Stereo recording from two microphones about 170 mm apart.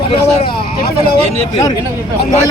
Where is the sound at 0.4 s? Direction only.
65° left (ahead or behind).